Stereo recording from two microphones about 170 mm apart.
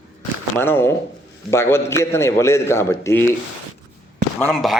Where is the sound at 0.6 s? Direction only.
15° left (ahead or behind).